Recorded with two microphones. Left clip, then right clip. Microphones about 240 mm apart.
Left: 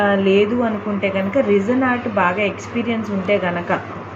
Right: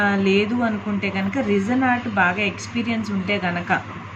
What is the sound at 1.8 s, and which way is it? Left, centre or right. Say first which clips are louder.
Speech: left 2 dB; right.